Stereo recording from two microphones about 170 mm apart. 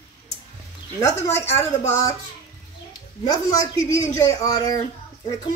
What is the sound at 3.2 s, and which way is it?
Speech, 20° left (ahead or behind).